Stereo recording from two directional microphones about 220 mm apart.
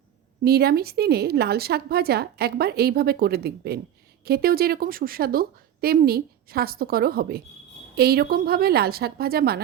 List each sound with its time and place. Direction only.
0.4 s a woman's voice: 45° right (ahead or behind)